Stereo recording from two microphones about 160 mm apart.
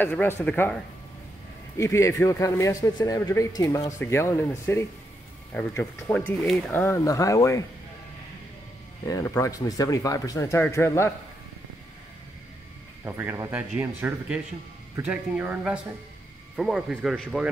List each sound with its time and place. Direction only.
0.0 s speech: 10° left (ahead or behind)
1.8 s a man's voice: 20° left (ahead or behind)
9.0 s a man's voice: 20° left (ahead or behind)
13.0 s speech: 15° right (ahead or behind)